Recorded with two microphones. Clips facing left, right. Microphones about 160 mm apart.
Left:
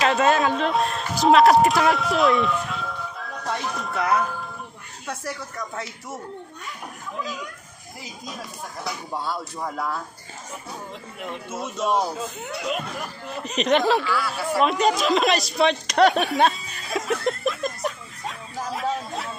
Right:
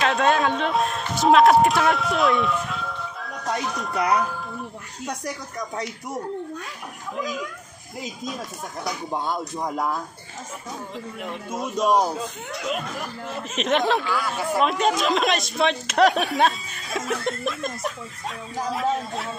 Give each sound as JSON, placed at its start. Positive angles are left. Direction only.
{"t": 0.0, "sound": "speech", "side_deg": 0}
{"t": 8.8, "sound": "speech", "side_deg": -20}
{"t": 12.2, "sound": "speech", "side_deg": 0}